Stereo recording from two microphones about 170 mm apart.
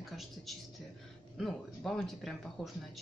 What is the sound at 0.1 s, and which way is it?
A woman's voice, centre (ahead or behind).